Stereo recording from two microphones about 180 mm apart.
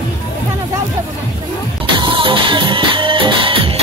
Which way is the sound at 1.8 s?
25° right (ahead or behind).